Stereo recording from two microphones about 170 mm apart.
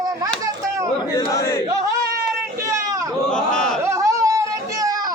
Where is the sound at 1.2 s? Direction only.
20° left (ahead or behind).